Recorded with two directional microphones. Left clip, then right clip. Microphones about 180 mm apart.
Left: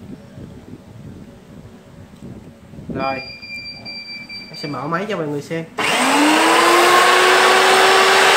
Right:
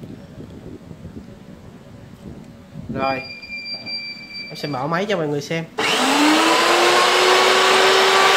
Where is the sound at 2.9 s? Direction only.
60° right (ahead or behind).